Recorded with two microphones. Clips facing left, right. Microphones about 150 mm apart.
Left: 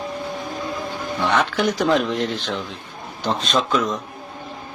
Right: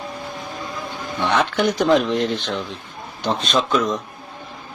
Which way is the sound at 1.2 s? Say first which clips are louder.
Right 1 dB; centre (ahead or behind).